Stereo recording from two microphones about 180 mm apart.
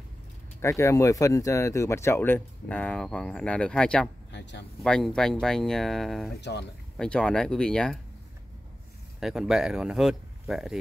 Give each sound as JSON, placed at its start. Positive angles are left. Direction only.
{"t": 0.6, "sound": "speech", "side_deg": 15}
{"t": 4.3, "sound": "speech", "side_deg": 75}
{"t": 4.8, "sound": "speech", "side_deg": 5}
{"t": 9.2, "sound": "speech", "side_deg": 0}